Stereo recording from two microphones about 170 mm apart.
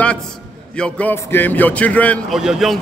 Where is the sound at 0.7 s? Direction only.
5° left (ahead or behind).